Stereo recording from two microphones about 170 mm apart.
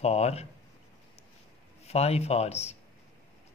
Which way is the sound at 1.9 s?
40° left (ahead or behind).